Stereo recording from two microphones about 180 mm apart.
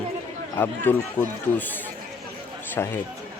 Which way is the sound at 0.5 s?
10° left (ahead or behind).